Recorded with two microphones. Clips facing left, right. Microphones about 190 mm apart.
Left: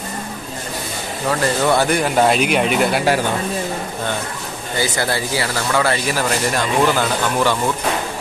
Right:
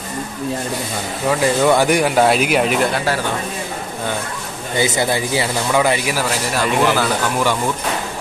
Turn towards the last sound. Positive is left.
turn(degrees=-10)  # may be behind; listen again after turning